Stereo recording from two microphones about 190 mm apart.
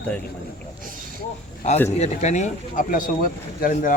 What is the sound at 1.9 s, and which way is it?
Speech, 35° left (ahead or behind).